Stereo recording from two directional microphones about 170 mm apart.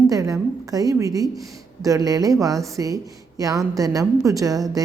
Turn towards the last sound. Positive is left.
turn(degrees=-20)  # may be behind; listen again after turning